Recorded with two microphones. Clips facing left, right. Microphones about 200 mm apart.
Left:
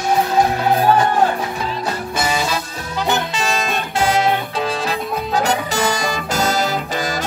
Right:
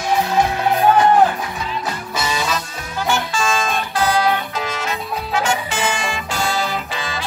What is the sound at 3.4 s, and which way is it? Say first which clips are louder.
Music: right 1 dB; 35° left (ahead or behind).